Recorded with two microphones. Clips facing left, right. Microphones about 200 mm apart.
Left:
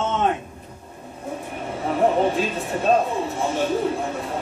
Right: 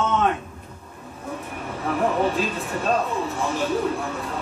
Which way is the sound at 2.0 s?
30° left (ahead or behind).